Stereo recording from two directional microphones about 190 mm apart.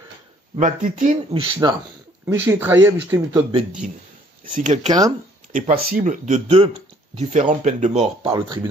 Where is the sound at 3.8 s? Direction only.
45° right (ahead or behind).